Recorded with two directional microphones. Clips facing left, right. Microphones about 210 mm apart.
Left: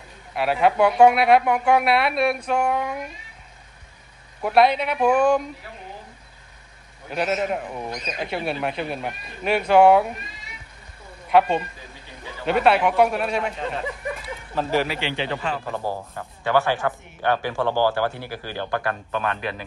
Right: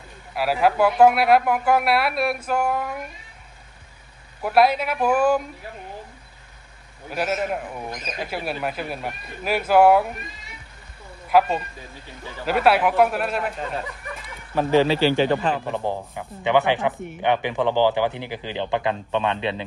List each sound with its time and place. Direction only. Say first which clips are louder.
0.3 s speech: even; centre (ahead or behind)
4.4 s speech: even; centre (ahead or behind)
7.1 s speech: left 1 dB; centre (ahead or behind)
11.2 s speech: left 1 dB; 5° right (ahead or behind)
14.5 s speech: right 5 dB; 20° right (ahead or behind)
15.0 s speech: right 8 dB; 40° right (ahead or behind)
15.7 s speech: right 2 dB; 20° right (ahead or behind)